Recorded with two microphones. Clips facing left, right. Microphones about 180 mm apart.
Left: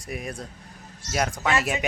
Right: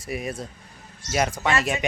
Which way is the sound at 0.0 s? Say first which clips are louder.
Right 3 dB; centre (ahead or behind).